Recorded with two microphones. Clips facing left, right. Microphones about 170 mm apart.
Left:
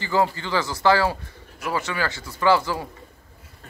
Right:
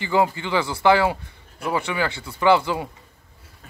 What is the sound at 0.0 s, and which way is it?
Speech, 15° right (ahead or behind).